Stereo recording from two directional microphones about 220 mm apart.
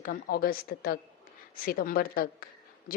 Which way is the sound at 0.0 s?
40° left (ahead or behind).